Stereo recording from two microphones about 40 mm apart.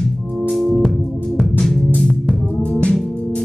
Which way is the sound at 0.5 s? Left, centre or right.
Centre.